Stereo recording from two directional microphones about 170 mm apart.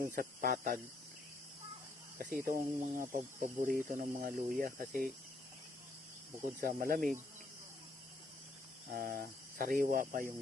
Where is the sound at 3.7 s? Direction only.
60° right (ahead or behind).